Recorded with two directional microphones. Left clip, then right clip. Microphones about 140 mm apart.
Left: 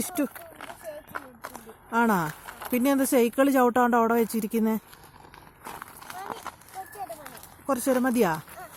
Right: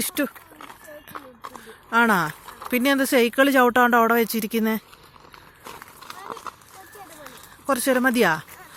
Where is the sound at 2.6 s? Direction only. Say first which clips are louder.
Right 4 dB; 5° left (ahead or behind).